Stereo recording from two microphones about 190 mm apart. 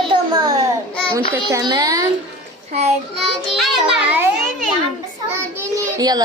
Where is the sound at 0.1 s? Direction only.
20° right (ahead or behind).